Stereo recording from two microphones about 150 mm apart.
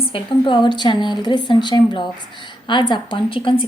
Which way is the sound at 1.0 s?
30° left (ahead or behind).